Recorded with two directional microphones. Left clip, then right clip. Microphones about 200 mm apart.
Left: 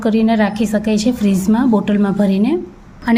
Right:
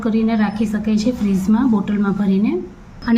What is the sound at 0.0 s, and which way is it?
A woman's voice, 40° left (ahead or behind).